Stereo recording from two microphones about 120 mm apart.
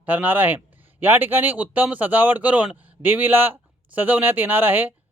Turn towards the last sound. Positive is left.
turn(degrees=-15)  # may be behind; listen again after turning